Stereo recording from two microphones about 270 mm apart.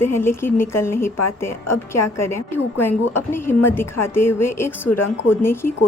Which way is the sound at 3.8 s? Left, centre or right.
Left.